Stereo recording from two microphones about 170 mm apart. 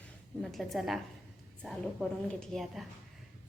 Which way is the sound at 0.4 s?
Centre (ahead or behind).